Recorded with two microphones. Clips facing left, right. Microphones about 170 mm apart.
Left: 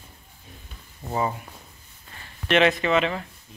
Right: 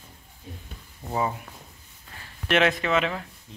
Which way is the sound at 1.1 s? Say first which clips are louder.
Left 1 dB; centre (ahead or behind).